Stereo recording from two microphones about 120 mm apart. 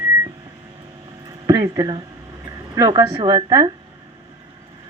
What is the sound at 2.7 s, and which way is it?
Speech, 30° right (ahead or behind).